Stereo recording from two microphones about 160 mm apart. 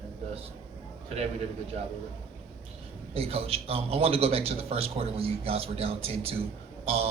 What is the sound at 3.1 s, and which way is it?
A man's voice, 40° right (ahead or behind).